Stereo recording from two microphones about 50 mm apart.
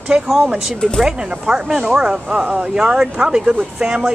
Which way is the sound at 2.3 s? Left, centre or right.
Right.